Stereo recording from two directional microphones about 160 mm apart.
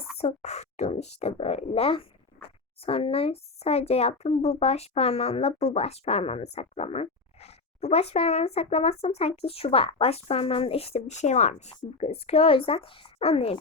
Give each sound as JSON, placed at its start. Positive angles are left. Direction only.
{"t": 0.2, "sound": "speech", "side_deg": 45}